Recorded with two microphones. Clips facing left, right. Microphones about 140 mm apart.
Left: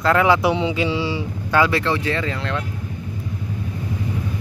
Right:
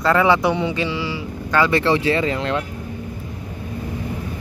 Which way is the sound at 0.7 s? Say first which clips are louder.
Left 2 dB; 15° left (ahead or behind).